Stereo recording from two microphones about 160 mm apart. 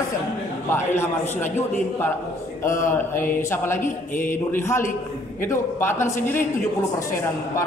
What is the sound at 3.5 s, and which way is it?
A man's voice, 15° left (ahead or behind).